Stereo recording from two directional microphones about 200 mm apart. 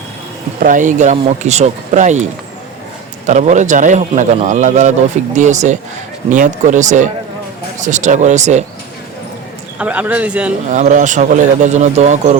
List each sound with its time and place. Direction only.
0.6 s a man's voice: 40° right (ahead or behind)
9.7 s speech: 5° right (ahead or behind)
10.7 s a man's voice: 40° right (ahead or behind)